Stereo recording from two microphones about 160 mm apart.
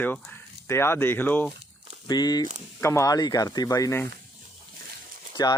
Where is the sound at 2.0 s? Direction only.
25° left (ahead or behind).